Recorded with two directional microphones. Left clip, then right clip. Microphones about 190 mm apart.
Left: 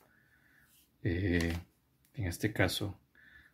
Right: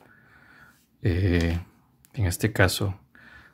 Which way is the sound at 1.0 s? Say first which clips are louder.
Right 7 dB; 25° right (ahead or behind).